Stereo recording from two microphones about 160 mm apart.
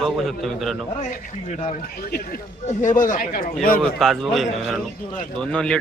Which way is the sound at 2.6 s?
50° left (ahead or behind).